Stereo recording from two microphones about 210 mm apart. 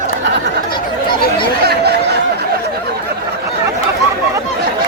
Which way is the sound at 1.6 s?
50° right (ahead or behind).